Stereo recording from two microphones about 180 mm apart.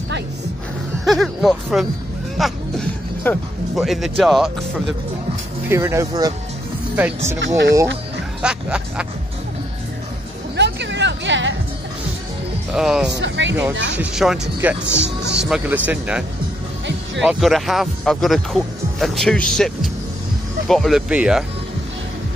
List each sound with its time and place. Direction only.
1.0 s speech: centre (ahead or behind)
3.3 s speech: 10° left (ahead or behind)
3.7 s speech: centre (ahead or behind)
5.7 s speech: 15° right (ahead or behind)
7.3 s speech: 80° right
8.4 s speech: 5° right (ahead or behind)
10.5 s music: 75° right (ahead or behind)
12.7 s speech: centre (ahead or behind)
13.2 s speech: 90° right
13.9 s speech: 5° right (ahead or behind)
14.9 s speech: 80° right
15.4 s speech: 5° right (ahead or behind)